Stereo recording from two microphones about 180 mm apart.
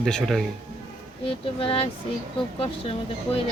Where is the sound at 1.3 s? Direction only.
30° left (ahead or behind).